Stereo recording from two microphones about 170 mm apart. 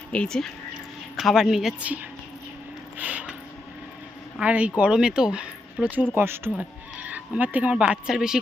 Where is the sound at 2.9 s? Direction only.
10° right (ahead or behind).